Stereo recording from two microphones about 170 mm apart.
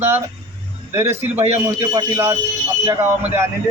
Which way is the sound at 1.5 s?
15° right (ahead or behind).